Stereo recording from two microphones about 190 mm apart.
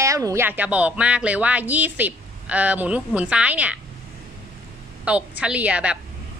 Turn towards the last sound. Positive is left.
turn(degrees=-5)  # may be behind; listen again after turning